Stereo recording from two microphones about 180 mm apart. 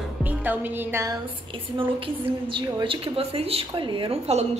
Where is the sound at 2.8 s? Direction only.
30° right (ahead or behind).